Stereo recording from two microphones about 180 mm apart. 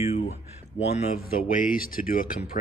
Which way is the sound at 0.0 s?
35° left (ahead or behind).